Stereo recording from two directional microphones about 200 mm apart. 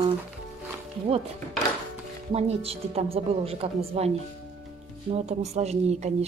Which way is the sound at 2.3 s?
30° right (ahead or behind).